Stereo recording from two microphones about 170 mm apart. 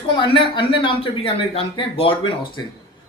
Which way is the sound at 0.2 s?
30° left (ahead or behind).